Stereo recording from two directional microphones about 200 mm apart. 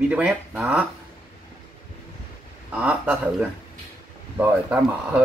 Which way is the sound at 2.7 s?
5° right (ahead or behind).